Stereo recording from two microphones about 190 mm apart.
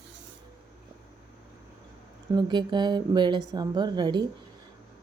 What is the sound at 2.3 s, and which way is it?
A woman's voice, 25° right (ahead or behind).